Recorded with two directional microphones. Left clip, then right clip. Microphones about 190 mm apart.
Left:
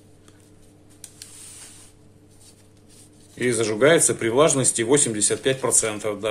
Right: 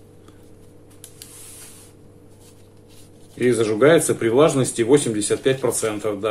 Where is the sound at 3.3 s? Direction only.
15° left (ahead or behind).